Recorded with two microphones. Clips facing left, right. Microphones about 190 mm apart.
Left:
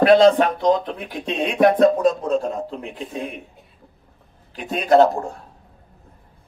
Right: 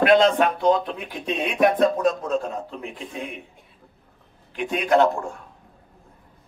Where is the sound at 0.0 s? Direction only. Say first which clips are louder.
Left 4 dB; 35° left (ahead or behind).